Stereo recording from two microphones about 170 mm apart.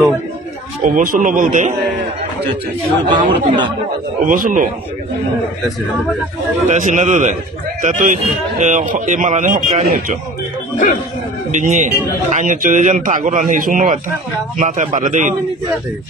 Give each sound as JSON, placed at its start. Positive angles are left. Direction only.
{"t": 0.8, "sound": "speech", "side_deg": -55}
{"t": 3.1, "sound": "speech", "side_deg": -30}
{"t": 4.3, "sound": "speech", "side_deg": -50}
{"t": 6.7, "sound": "speech", "side_deg": -45}
{"t": 11.5, "sound": "speech", "side_deg": -45}